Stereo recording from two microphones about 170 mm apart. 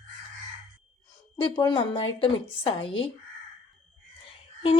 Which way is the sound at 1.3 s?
30° left (ahead or behind).